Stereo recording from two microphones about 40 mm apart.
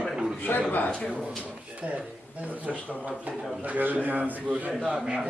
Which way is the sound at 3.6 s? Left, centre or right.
Right.